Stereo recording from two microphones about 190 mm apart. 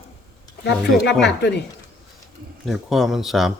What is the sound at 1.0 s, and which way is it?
Speech, 65° left (ahead or behind).